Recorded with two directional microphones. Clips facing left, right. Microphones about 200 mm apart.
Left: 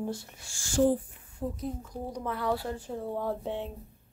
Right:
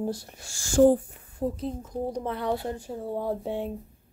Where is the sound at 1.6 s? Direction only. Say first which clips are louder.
Right 5 dB; 25° right (ahead or behind).